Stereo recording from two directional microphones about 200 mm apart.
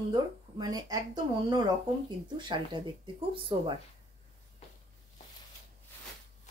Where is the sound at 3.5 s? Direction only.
25° right (ahead or behind).